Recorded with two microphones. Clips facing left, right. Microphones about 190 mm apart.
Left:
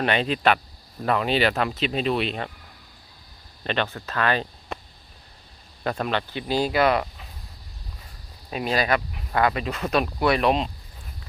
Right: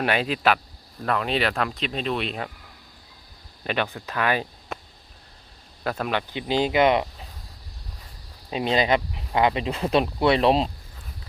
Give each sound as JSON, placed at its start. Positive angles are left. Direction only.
{"t": 0.0, "sound": "speech", "side_deg": -5}
{"t": 3.6, "sound": "speech", "side_deg": -10}
{"t": 5.8, "sound": "speech", "side_deg": -5}
{"t": 8.4, "sound": "speech", "side_deg": -20}